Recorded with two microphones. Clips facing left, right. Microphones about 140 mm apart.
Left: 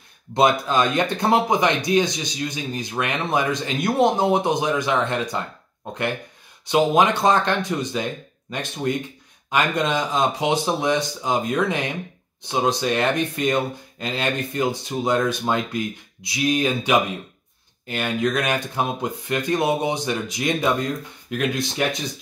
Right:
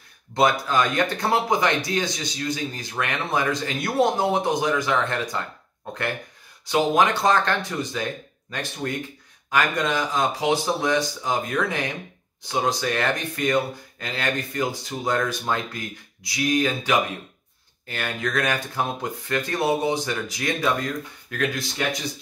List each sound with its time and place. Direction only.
0.3 s speech: 20° left (ahead or behind)
6.7 s speech: 20° left (ahead or behind)